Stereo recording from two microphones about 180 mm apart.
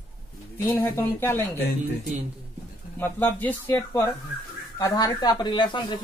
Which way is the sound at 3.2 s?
10° left (ahead or behind).